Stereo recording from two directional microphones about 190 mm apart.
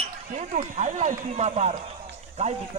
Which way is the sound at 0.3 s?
40° right (ahead or behind).